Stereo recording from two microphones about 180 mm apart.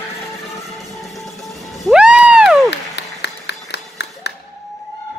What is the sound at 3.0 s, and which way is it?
Music, 70° left (ahead or behind).